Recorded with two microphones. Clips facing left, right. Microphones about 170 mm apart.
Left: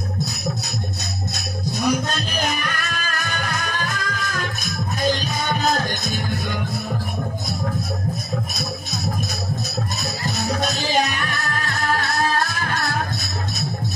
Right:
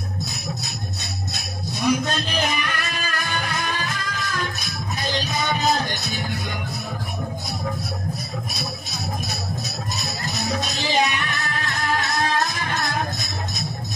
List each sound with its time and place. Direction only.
1.3 s music: 40° left (ahead or behind)
10.3 s music: 45° left (ahead or behind)